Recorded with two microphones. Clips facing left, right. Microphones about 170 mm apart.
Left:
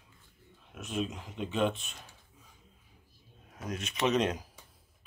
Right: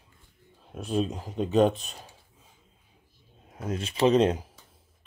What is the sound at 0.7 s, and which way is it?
Speech, 35° right (ahead or behind).